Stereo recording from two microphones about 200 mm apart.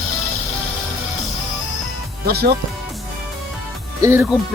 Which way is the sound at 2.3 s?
50° right (ahead or behind).